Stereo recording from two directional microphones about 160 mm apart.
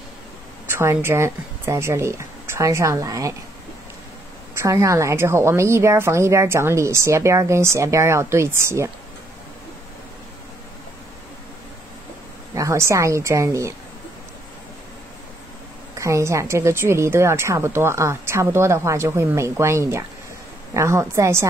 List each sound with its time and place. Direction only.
0.7 s speech: 15° right (ahead or behind)
4.6 s speech: 20° right (ahead or behind)
12.5 s a woman's voice: 20° right (ahead or behind)
16.0 s speech: 20° right (ahead or behind)